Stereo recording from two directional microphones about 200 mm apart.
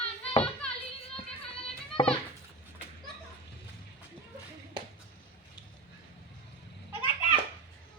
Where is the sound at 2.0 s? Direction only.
25° left (ahead or behind).